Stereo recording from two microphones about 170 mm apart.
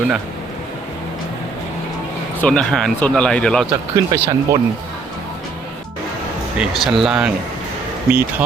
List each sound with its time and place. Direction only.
2.4 s speech: 5° left (ahead or behind)
3.7 s speech: 15° right (ahead or behind)
6.6 s speech: centre (ahead or behind)